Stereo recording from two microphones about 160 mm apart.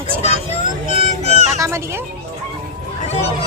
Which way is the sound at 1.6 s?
15° right (ahead or behind).